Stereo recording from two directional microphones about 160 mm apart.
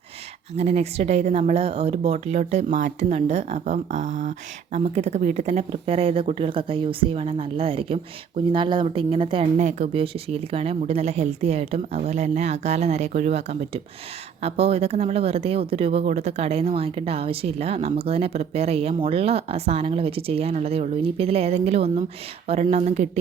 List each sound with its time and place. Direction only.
0.5 s speech: 40° right (ahead or behind)
9.6 s speech: 45° right (ahead or behind)